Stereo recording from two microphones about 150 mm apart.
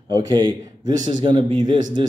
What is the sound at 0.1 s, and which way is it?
A man's voice, 30° right (ahead or behind).